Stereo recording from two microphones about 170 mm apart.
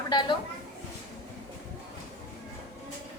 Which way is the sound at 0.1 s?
25° left (ahead or behind).